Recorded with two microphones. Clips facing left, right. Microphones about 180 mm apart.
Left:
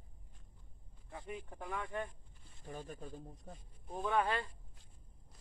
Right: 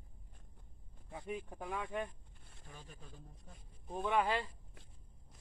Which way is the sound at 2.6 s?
40° left (ahead or behind).